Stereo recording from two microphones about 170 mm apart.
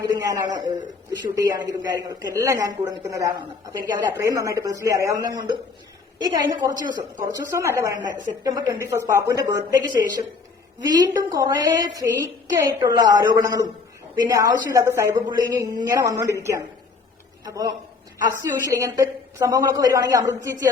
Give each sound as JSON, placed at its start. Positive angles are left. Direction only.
{"t": 0.0, "sound": "a woman's voice", "side_deg": -20}